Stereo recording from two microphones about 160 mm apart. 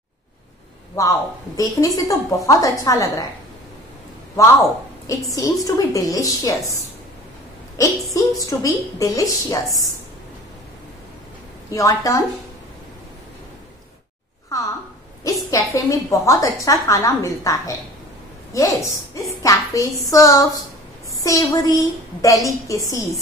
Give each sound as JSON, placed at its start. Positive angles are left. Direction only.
{"t": 1.6, "sound": "a woman's voice", "side_deg": 20}
{"t": 4.4, "sound": "a woman's voice", "side_deg": 20}
{"t": 7.7, "sound": "a woman's voice", "side_deg": 20}
{"t": 11.7, "sound": "a woman's voice", "side_deg": 20}
{"t": 14.5, "sound": "a sound", "side_deg": 20}
{"t": 15.2, "sound": "a woman's voice", "side_deg": 20}